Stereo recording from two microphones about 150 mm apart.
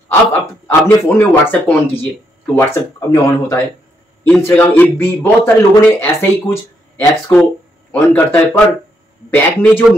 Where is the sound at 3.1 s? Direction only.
20° left (ahead or behind).